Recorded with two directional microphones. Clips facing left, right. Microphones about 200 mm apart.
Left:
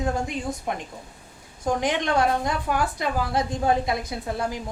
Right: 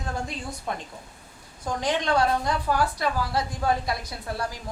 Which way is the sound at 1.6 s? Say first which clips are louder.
Left 2 dB; 20° left (ahead or behind).